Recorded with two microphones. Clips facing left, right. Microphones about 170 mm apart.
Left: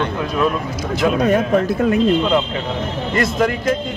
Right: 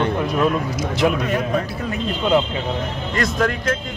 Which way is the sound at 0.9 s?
45° left (ahead or behind).